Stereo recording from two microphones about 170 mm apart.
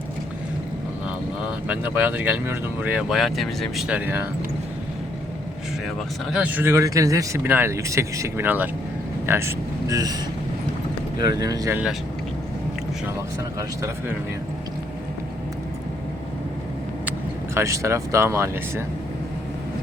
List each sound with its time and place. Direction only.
1.5 s speech: 10° right (ahead or behind)
6.3 s speech: 10° right (ahead or behind)
11.2 s speech: 20° right (ahead or behind)
13.6 s speech: 15° right (ahead or behind)
17.1 s speech: 15° right (ahead or behind)